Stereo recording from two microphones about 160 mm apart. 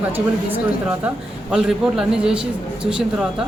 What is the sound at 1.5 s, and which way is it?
Speech, 5° right (ahead or behind).